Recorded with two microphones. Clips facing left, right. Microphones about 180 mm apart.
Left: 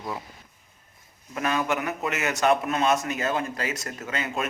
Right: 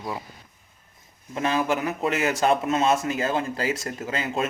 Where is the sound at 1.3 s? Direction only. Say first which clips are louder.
Right 2 dB; 30° right (ahead or behind).